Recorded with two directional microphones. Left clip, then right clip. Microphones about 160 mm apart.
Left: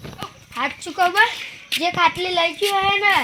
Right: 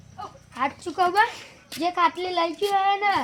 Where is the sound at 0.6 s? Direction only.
65° left (ahead or behind).